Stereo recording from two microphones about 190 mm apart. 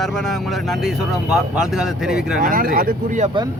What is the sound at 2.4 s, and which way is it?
Speech, 45° right (ahead or behind).